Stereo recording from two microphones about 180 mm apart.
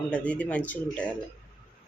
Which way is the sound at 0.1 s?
5° left (ahead or behind).